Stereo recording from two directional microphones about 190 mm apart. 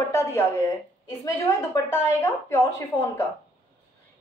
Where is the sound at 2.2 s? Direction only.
15° left (ahead or behind).